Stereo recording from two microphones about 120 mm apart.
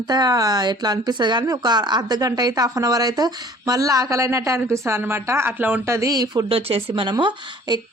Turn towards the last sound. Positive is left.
turn(degrees=-35)  # may be behind; listen again after turning